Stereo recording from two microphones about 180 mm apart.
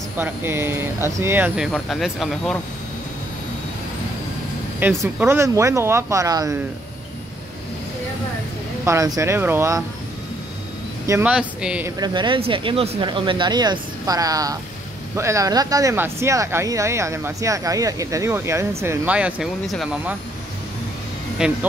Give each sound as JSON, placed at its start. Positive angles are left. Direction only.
{"t": 0.2, "sound": "speech", "side_deg": -15}
{"t": 5.0, "sound": "speech", "side_deg": -15}
{"t": 8.8, "sound": "speech", "side_deg": -15}
{"t": 11.1, "sound": "speech", "side_deg": -10}
{"t": 12.0, "sound": "speech", "side_deg": -25}
{"t": 21.4, "sound": "speech", "side_deg": -5}